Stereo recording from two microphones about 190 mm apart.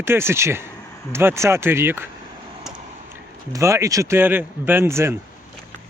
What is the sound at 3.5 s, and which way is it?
Speech, 15° right (ahead or behind).